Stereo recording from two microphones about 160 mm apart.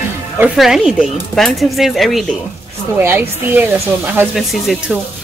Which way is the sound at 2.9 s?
10° right (ahead or behind).